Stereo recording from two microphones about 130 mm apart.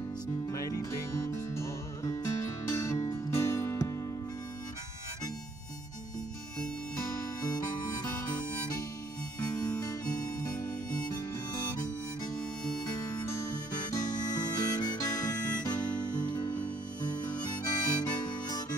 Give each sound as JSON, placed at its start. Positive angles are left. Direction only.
{"t": 0.5, "sound": "music", "side_deg": 25}
{"t": 7.4, "sound": "harmonica", "side_deg": 30}
{"t": 9.6, "sound": "music", "side_deg": 30}
{"t": 12.9, "sound": "music", "side_deg": 30}
{"t": 17.6, "sound": "harmonica", "side_deg": 30}